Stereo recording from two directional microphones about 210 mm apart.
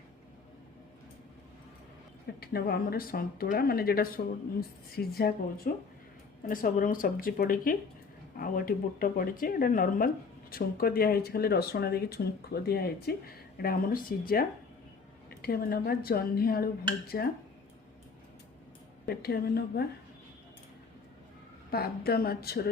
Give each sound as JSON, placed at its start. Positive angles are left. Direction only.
{"t": 2.4, "sound": "speech", "side_deg": 45}
{"t": 19.0, "sound": "speech", "side_deg": 45}
{"t": 21.7, "sound": "speech", "side_deg": 50}